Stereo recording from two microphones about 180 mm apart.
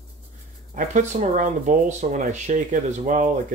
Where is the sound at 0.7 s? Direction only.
45° right (ahead or behind).